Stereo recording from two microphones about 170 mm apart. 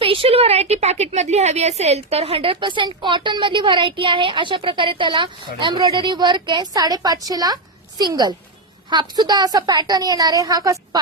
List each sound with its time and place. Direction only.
0.0 s a woman's voice: 30° right (ahead or behind)